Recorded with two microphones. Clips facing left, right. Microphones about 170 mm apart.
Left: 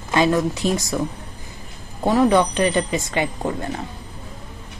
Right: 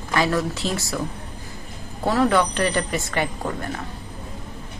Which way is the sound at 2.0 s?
20° left (ahead or behind).